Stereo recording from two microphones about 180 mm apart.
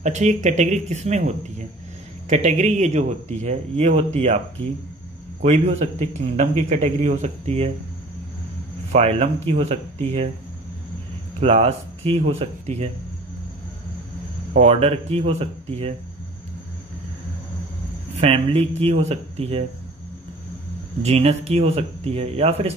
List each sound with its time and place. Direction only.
0.0 s a man's voice: 40° right (ahead or behind)
5.4 s a man's voice: 35° right (ahead or behind)
8.9 s a man's voice: 35° right (ahead or behind)
11.3 s a man's voice: 35° right (ahead or behind)
14.5 s a man's voice: 35° right (ahead or behind)
18.1 s a man's voice: 35° right (ahead or behind)
21.0 s a man's voice: 35° right (ahead or behind)